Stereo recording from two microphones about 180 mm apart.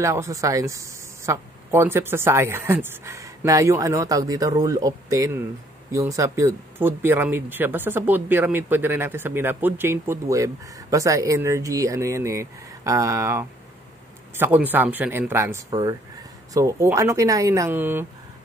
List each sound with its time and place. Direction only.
0.0 s speech: 15° right (ahead or behind)